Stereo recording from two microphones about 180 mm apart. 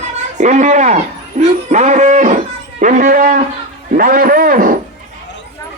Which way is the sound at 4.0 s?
50° right (ahead or behind).